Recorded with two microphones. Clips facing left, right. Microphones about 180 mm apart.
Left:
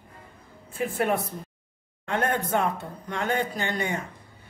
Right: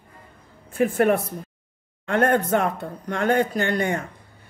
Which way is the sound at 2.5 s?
55° right (ahead or behind).